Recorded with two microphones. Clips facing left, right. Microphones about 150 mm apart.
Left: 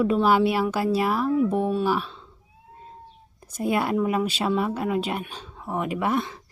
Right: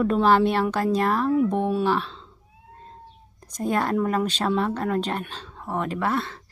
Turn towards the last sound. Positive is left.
turn(degrees=15)  # may be behind; listen again after turning